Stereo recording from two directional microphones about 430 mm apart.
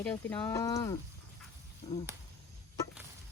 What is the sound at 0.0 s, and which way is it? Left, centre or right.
Speech, centre.